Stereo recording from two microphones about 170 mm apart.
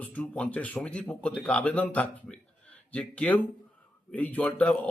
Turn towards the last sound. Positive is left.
turn(degrees=10)  # may be behind; listen again after turning